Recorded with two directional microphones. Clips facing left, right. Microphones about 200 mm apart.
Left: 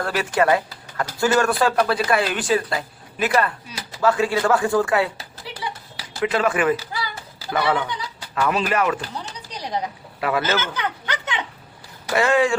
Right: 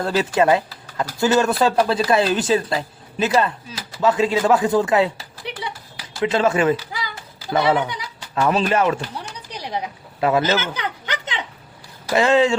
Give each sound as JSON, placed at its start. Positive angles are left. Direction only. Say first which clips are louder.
{"t": 0.0, "sound": "speech", "louder": "right 2 dB", "side_deg": -25}
{"t": 7.8, "sound": "speech", "louder": "right 3 dB", "side_deg": -15}
{"t": 8.4, "sound": "speech", "louder": "right 3 dB", "side_deg": -30}
{"t": 10.2, "sound": "speech", "louder": "right 5 dB", "side_deg": -25}
{"t": 10.4, "sound": "a sound", "louder": "right 2 dB", "side_deg": -15}
{"t": 12.1, "sound": "speech", "louder": "right 2 dB", "side_deg": -20}